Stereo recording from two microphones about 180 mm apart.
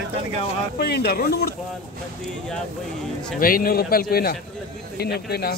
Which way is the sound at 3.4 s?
55° left (ahead or behind).